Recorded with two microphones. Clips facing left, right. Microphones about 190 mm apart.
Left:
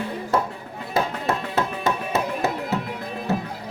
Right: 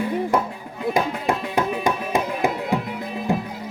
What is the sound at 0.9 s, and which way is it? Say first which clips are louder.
Music: even; 15° right (ahead or behind).